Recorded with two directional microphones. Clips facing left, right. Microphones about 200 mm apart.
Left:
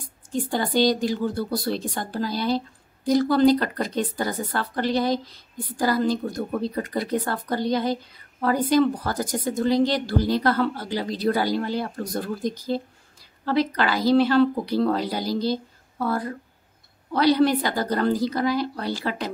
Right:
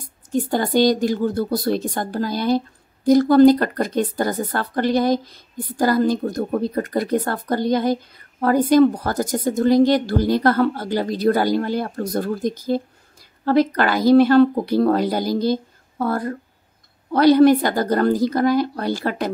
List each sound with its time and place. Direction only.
0.7 s a woman's voice: 50° right (ahead or behind)